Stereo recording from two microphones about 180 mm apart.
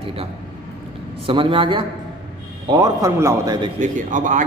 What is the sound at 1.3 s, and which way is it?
A man's voice, 30° right (ahead or behind).